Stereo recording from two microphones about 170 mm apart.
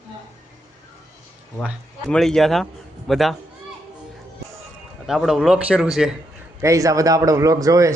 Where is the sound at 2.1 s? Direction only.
5° left (ahead or behind).